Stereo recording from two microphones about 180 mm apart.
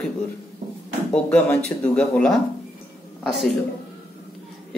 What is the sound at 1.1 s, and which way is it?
A man's voice, 5° left (ahead or behind).